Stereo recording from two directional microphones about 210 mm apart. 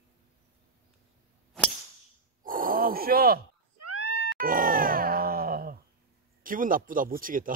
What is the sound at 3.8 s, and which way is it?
Cat, 90° right.